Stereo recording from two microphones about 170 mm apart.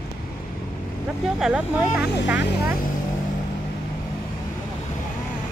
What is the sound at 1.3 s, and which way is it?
Speech, 5° right (ahead or behind).